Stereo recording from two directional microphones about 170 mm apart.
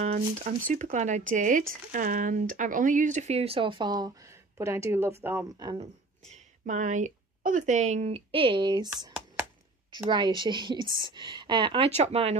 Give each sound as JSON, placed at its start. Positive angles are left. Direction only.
{"t": 0.0, "sound": "speech", "side_deg": -45}
{"t": 6.3, "sound": "speech", "side_deg": -45}